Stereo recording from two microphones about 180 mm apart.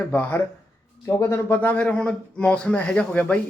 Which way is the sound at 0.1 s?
10° left (ahead or behind).